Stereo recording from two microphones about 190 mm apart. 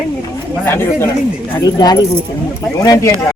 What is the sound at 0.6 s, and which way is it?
Speech, 15° left (ahead or behind).